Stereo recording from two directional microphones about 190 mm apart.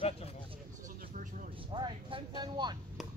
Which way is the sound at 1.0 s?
45° right (ahead or behind).